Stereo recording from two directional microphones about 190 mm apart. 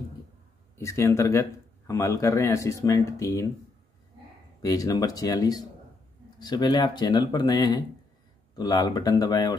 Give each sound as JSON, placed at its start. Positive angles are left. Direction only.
{"t": 0.7, "sound": "speech", "side_deg": 15}
{"t": 4.6, "sound": "speech", "side_deg": 20}